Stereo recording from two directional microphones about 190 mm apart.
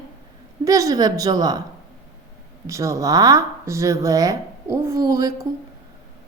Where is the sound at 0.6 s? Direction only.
20° right (ahead or behind).